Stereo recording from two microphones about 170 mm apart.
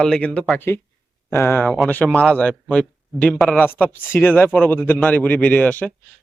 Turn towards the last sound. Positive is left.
turn(degrees=10)  # may be behind; listen again after turning